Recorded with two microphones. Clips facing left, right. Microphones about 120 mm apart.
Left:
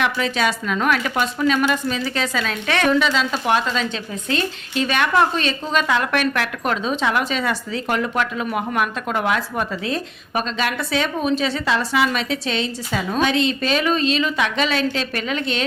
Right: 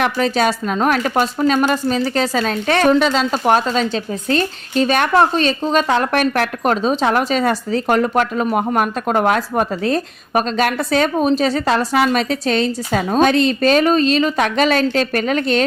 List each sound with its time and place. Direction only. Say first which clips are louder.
0.0 s speech: right 4 dB; 40° right (ahead or behind)